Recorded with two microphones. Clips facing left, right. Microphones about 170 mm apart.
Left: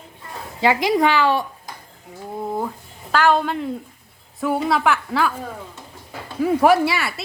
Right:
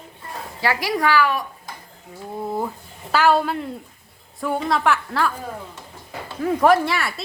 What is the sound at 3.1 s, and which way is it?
A woman's voice, 5° right (ahead or behind).